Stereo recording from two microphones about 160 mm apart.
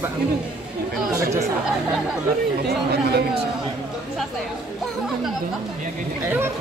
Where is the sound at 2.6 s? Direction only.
90° right.